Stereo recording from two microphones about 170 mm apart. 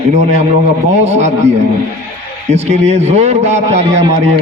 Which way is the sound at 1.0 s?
40° right (ahead or behind).